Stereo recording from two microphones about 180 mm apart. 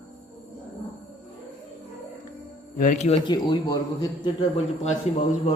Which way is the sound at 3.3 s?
25° left (ahead or behind).